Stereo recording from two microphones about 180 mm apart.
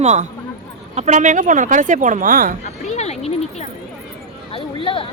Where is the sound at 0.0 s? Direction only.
40° right (ahead or behind).